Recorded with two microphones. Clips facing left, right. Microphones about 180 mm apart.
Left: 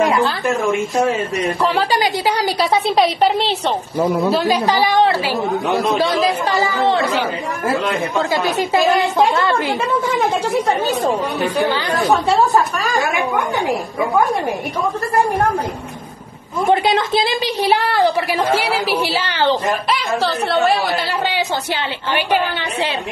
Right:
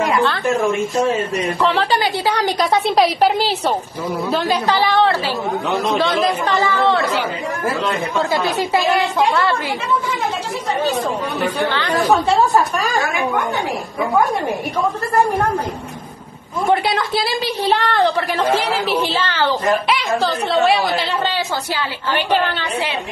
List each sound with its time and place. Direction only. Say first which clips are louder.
1.9 s a woman's voice: left 1 dB; 10° left (ahead or behind)
4.3 s a woman's voice: left 2 dB; 10° left (ahead or behind)
11.6 s a woman's voice: left 2 dB; 15° left (ahead or behind)
16.8 s a woman's voice: left 3 dB; 20° left (ahead or behind)
17.6 s a woman's voice: left 1 dB; 10° left (ahead or behind)